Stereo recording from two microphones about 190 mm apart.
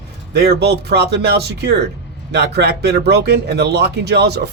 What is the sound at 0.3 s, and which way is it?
Speech, 60° right (ahead or behind).